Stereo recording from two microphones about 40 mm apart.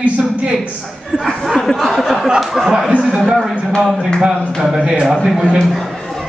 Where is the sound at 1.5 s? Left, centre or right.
Centre.